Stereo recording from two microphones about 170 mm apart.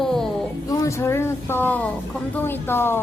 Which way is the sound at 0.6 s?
20° left (ahead or behind).